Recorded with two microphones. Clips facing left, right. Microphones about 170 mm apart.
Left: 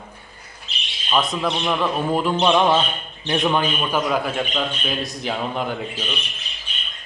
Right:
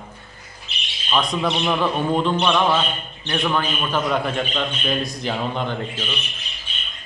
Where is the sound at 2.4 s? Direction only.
15° left (ahead or behind).